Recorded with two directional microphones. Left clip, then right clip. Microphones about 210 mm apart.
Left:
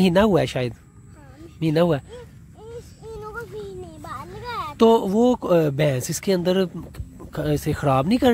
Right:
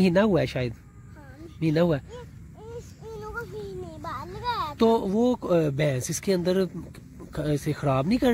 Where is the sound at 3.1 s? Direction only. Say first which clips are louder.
Left 2 dB; 15° left (ahead or behind).